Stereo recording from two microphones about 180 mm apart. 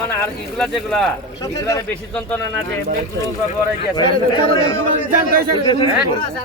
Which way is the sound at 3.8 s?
30° left (ahead or behind).